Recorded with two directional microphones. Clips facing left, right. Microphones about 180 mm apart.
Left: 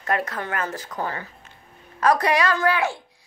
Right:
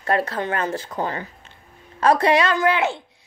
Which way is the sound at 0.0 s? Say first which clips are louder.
Right 4 dB; 30° right (ahead or behind).